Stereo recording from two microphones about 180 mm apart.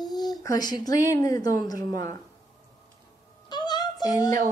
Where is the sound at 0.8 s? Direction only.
20° left (ahead or behind).